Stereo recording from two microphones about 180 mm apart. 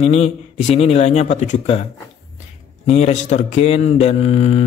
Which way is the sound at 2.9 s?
40° left (ahead or behind).